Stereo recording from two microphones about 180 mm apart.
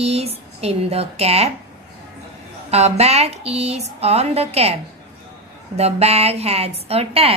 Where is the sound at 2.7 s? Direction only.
35° right (ahead or behind).